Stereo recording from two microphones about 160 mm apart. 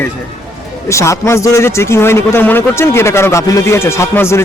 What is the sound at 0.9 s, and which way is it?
A man's voice, 20° left (ahead or behind).